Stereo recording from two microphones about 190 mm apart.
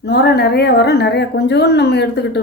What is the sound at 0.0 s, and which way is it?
A woman's voice, 60° left (ahead or behind).